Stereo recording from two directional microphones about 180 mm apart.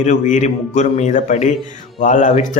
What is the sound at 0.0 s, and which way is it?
A man's voice, 40° left (ahead or behind).